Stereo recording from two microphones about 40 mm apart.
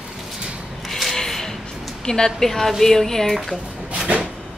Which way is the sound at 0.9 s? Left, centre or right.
Centre.